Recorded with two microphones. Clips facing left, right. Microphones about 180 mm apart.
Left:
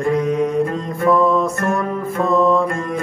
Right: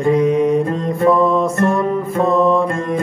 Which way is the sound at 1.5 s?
25° right (ahead or behind).